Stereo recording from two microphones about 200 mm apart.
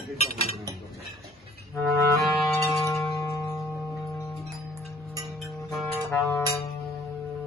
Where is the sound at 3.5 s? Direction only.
Centre (ahead or behind).